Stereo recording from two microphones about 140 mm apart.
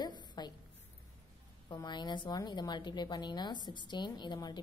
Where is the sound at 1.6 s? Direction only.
30° left (ahead or behind).